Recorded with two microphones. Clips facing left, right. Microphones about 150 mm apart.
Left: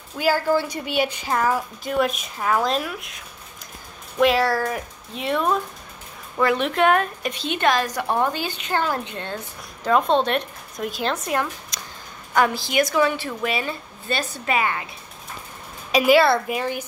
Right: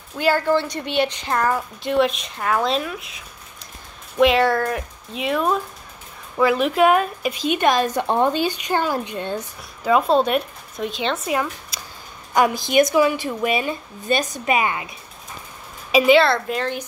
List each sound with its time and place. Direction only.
0.2 s a woman's voice: 10° left (ahead or behind)
4.2 s a woman's voice: centre (ahead or behind); by 9.4 s 15° right (ahead or behind)
9.8 s a woman's voice: 5° right (ahead or behind)
12.4 s a woman's voice: 15° right (ahead or behind)
15.9 s a woman's voice: 5° left (ahead or behind)